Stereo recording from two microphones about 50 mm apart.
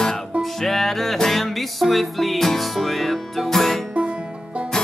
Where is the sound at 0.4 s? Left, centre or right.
Centre.